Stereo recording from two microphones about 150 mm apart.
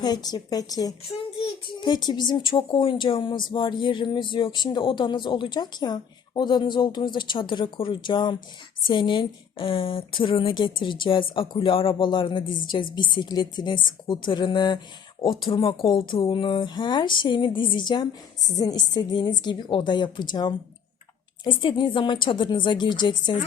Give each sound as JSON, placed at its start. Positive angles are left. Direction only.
{"t": 0.0, "sound": "a woman's voice", "side_deg": 25}
{"t": 1.0, "sound": "a child's voice", "side_deg": 35}